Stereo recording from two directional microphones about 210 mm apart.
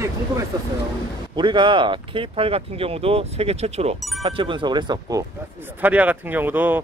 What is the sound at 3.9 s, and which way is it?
Speech, centre (ahead or behind).